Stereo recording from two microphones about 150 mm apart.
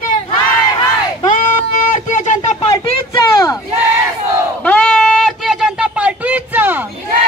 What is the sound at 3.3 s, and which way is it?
Battle cry, 25° left (ahead or behind).